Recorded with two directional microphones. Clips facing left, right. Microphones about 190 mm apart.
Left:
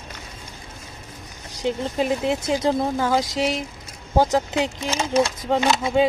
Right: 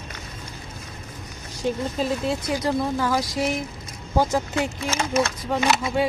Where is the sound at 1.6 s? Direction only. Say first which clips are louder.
Left 2 dB; 15° left (ahead or behind).